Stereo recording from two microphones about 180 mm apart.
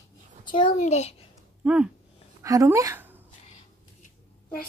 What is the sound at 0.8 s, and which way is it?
Speech, 35° left (ahead or behind).